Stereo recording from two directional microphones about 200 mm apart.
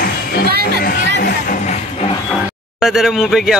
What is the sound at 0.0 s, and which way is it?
Music, 50° left (ahead or behind).